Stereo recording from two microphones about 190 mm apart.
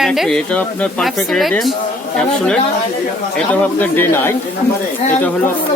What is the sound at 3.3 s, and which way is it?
Speech, 10° left (ahead or behind).